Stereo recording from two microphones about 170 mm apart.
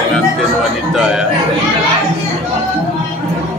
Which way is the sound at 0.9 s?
5° right (ahead or behind).